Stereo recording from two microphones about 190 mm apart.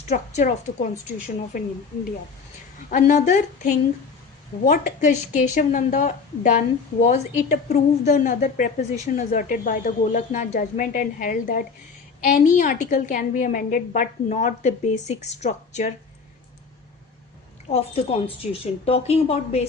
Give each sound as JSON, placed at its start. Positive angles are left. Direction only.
{"t": 0.1, "sound": "a woman's voice", "side_deg": 40}
{"t": 2.9, "sound": "a woman's voice", "side_deg": 40}
{"t": 17.7, "sound": "speech", "side_deg": 30}